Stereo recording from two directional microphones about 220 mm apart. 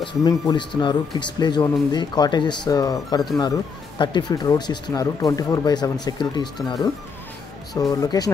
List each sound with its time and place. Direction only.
0.0 s speech: 20° left (ahead or behind)